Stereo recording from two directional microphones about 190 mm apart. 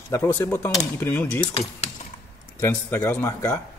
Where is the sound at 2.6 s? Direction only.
15° left (ahead or behind).